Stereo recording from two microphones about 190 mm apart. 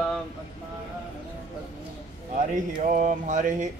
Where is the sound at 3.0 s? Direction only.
40° right (ahead or behind).